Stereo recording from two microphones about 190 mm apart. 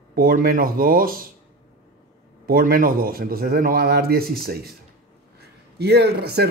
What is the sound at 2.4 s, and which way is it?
Speech, 50° right (ahead or behind).